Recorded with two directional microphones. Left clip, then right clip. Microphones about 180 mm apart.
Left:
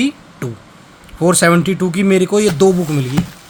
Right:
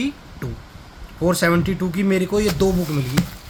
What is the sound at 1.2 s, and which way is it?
Speech, 45° left (ahead or behind).